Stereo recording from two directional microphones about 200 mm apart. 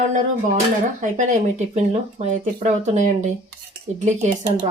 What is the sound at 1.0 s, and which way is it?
Speech, 35° right (ahead or behind).